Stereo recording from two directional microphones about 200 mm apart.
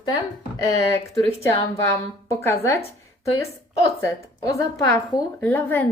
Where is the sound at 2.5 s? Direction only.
15° left (ahead or behind).